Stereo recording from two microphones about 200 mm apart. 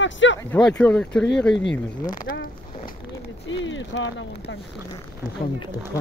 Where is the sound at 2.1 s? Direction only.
40° left (ahead or behind).